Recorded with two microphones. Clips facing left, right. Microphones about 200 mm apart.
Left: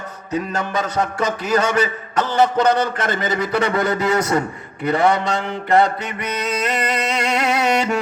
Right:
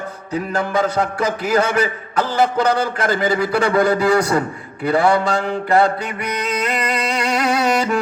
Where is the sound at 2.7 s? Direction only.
25° left (ahead or behind).